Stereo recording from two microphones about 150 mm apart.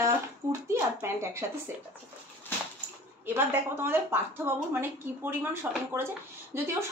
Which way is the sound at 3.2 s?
15° right (ahead or behind).